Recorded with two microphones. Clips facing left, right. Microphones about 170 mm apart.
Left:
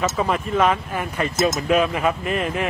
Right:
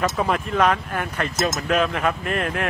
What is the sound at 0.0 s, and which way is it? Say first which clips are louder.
Speech: even; centre (ahead or behind).